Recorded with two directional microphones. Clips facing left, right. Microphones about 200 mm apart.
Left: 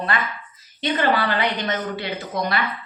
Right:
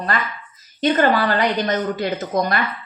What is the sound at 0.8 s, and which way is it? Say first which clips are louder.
A woman's voice: right 4 dB; 45° right (ahead or behind).